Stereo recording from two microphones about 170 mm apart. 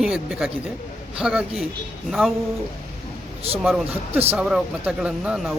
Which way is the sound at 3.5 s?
35° right (ahead or behind).